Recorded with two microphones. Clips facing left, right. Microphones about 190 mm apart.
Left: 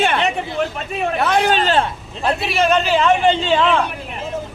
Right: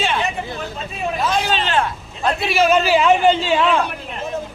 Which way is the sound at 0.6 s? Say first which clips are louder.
Left 5 dB; 70° left (ahead or behind).